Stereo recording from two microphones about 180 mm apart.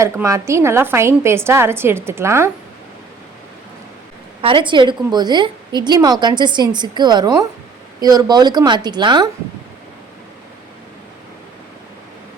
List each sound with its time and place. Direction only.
0.0 s a woman's voice: 15° right (ahead or behind)
4.4 s a woman's voice: 30° right (ahead or behind)